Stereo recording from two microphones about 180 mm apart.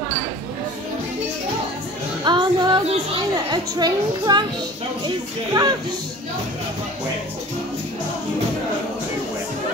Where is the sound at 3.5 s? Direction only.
25° right (ahead or behind).